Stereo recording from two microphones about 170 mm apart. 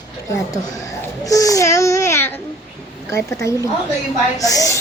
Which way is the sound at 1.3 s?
20° left (ahead or behind).